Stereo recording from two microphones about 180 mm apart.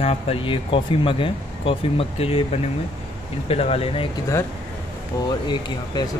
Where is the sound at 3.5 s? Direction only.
35° left (ahead or behind).